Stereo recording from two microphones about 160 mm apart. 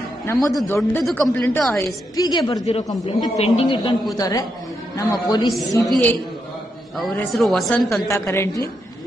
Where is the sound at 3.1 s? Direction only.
40° left (ahead or behind).